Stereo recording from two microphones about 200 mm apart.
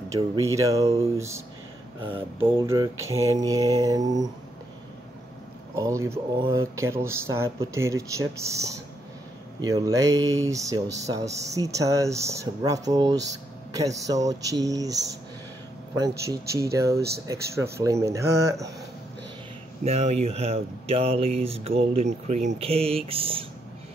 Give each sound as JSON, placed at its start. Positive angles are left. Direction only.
{"t": 0.1, "sound": "speech", "side_deg": -15}
{"t": 2.6, "sound": "speech", "side_deg": -15}
{"t": 5.8, "sound": "speech", "side_deg": -15}
{"t": 16.5, "sound": "speech", "side_deg": -15}
{"t": 19.8, "sound": "speech", "side_deg": -35}